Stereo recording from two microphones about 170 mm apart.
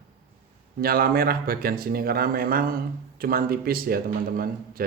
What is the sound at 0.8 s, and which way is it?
Speech, 60° right (ahead or behind).